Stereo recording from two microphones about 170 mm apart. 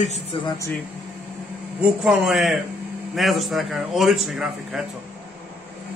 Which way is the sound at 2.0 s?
5° right (ahead or behind).